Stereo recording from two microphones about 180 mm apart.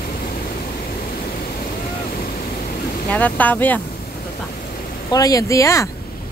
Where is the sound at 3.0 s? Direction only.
10° left (ahead or behind).